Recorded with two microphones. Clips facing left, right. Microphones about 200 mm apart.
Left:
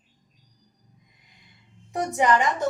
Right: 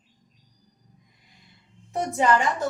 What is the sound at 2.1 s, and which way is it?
Speech, 15° left (ahead or behind).